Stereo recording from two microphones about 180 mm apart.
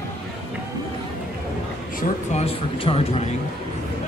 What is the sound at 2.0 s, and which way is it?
Speech, 35° left (ahead or behind).